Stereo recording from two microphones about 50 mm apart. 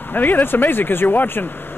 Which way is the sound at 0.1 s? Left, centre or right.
Left.